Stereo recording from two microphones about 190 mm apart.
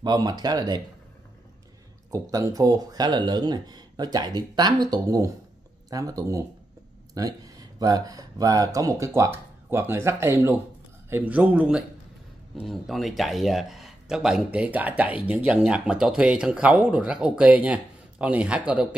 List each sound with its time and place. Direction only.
0.0 s speech: 20° right (ahead or behind)
2.0 s speech: 20° right (ahead or behind)